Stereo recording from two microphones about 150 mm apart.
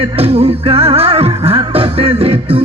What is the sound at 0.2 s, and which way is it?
Music, 40° right (ahead or behind).